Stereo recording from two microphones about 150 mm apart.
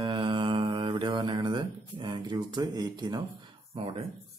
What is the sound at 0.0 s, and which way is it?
Music, 30° right (ahead or behind).